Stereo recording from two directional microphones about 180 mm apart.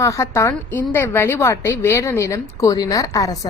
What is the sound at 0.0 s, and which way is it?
A woman's voice, 15° left (ahead or behind).